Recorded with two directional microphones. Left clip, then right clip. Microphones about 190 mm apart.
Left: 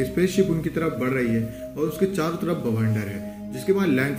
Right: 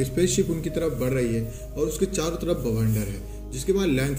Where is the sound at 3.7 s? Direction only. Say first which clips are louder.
Left 2 dB; 35° right (ahead or behind).